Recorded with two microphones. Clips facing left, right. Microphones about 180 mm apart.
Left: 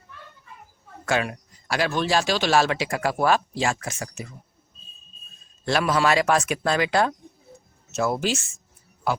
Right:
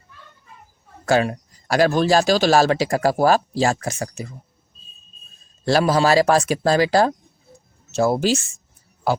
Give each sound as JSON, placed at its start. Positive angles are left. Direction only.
{"t": 1.0, "sound": "speech", "side_deg": -35}
{"t": 5.6, "sound": "speech", "side_deg": -35}